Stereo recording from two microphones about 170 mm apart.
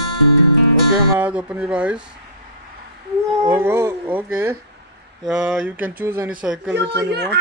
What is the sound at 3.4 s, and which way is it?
Speech, 15° right (ahead or behind).